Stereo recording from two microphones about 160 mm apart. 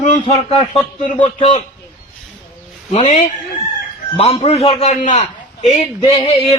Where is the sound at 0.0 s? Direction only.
45° left (ahead or behind).